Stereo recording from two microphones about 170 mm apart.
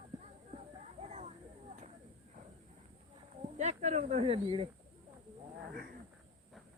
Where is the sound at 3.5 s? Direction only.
45° right (ahead or behind).